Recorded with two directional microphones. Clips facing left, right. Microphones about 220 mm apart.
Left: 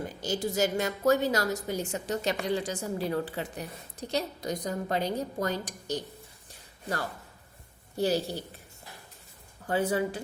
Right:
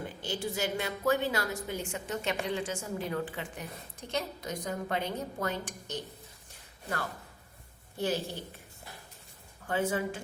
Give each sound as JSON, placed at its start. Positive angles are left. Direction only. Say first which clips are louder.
{"t": 0.2, "sound": "a woman's voice", "louder": "left 6 dB", "side_deg": 40}
{"t": 7.9, "sound": "a woman's voice", "louder": "left 5 dB", "side_deg": 35}
{"t": 9.6, "sound": "a woman's voice", "louder": "left 3 dB", "side_deg": 35}